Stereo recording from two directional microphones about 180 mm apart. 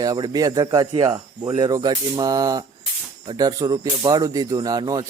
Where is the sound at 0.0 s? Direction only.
20° right (ahead or behind).